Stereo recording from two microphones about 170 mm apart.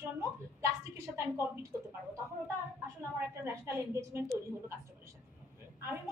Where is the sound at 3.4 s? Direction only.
15° right (ahead or behind).